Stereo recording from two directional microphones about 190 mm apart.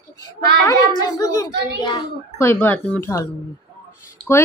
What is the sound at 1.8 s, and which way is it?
Speech, 20° left (ahead or behind).